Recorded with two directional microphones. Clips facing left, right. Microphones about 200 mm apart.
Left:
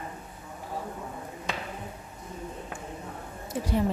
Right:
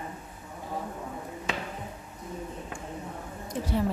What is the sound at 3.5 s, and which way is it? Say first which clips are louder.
Speech: left 1 dB; 15° left (ahead or behind).